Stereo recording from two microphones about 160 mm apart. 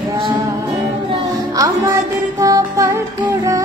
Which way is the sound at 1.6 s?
20° right (ahead or behind).